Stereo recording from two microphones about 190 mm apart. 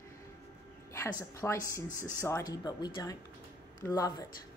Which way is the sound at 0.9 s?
15° left (ahead or behind).